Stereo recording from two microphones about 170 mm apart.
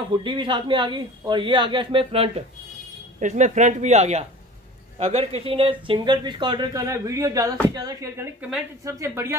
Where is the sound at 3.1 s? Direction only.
45° right (ahead or behind); by 9.4 s 15° right (ahead or behind).